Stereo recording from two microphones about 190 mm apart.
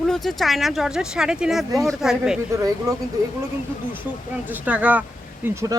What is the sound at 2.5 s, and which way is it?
Speech, 15° right (ahead or behind).